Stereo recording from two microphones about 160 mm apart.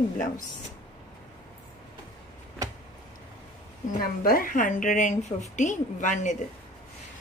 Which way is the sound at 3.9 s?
65° left (ahead or behind).